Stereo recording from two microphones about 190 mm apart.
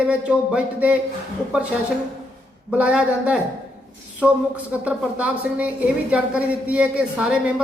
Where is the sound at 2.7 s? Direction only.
5° right (ahead or behind).